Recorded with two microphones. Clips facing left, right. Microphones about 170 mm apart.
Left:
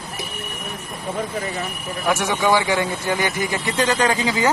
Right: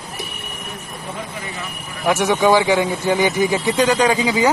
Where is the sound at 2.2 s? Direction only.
15° right (ahead or behind).